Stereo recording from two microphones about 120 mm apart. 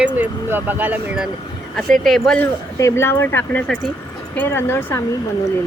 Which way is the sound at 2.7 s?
25° left (ahead or behind).